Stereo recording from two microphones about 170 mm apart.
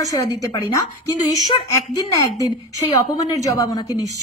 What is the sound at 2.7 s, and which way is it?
A woman's voice, 20° left (ahead or behind).